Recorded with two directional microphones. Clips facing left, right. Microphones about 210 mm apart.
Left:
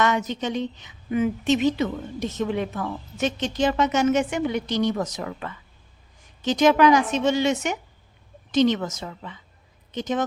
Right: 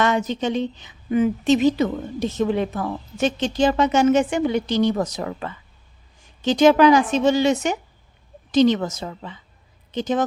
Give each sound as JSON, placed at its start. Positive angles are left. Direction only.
{"t": 0.0, "sound": "a woman's voice", "side_deg": -30}